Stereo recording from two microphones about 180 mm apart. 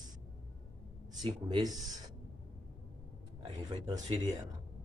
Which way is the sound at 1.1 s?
25° right (ahead or behind).